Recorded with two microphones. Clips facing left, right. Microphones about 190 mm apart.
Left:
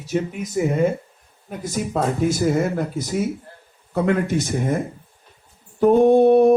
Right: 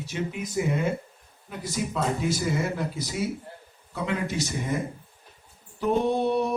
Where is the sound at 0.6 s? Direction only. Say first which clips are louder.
Left 7 dB; 45° left (ahead or behind).